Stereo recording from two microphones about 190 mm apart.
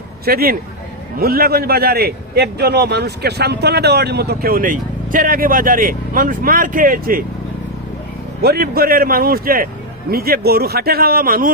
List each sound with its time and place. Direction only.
0.3 s a man's voice: 50° right (ahead or behind)
8.4 s a man's voice: 55° right (ahead or behind)